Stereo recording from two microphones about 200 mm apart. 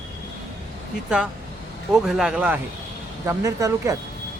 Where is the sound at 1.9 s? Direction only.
Centre (ahead or behind).